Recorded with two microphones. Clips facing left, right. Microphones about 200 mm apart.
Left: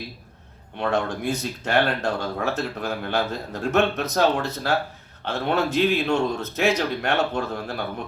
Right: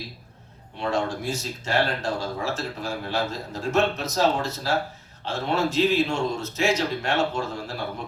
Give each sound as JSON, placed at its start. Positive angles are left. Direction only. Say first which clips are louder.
{"t": 0.8, "sound": "speech", "louder": "left 2 dB", "side_deg": 60}